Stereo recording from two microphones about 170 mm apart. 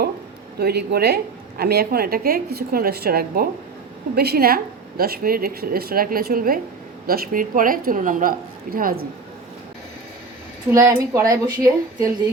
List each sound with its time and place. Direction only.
0.6 s a woman's voice: 70° right (ahead or behind)
10.7 s a woman's voice: 15° right (ahead or behind)